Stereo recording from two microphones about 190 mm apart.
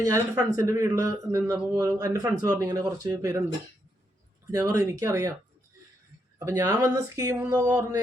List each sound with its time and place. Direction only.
0.0 s speech: 15° right (ahead or behind)
4.5 s speech: 15° right (ahead or behind)
6.4 s speech: 15° right (ahead or behind)